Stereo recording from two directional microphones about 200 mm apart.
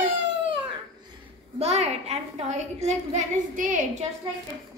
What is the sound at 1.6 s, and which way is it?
A woman's voice, 30° right (ahead or behind).